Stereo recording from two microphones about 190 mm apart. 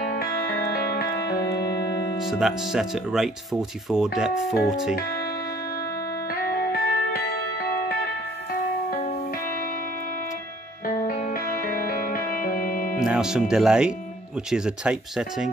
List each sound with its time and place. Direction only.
0.2 s music: 55° left (ahead or behind)
1.8 s music: 20° left (ahead or behind)
2.2 s speech: centre (ahead or behind)
6.5 s music: 50° left (ahead or behind)
10.9 s music: 45° left (ahead or behind)
13.0 s speech: 5° right (ahead or behind)